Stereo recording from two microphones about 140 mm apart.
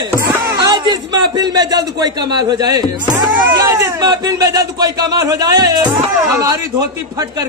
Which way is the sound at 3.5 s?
30° right (ahead or behind).